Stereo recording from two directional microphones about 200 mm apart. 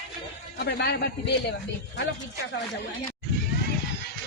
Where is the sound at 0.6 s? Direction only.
55° left (ahead or behind).